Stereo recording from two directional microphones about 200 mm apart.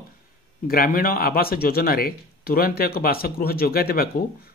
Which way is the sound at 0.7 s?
45° left (ahead or behind).